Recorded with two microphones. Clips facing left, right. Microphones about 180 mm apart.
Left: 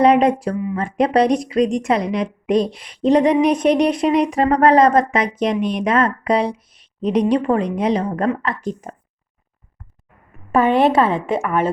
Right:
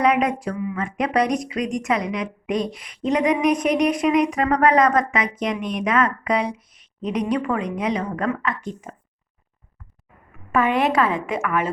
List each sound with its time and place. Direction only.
0.0 s speech: 30° left (ahead or behind)
10.5 s a woman's voice: 30° left (ahead or behind)